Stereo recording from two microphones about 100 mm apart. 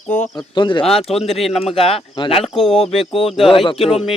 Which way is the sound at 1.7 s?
70° left (ahead or behind).